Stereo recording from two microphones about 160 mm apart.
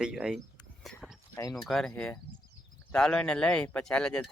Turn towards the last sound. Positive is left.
turn(degrees=5)  # may be behind; listen again after turning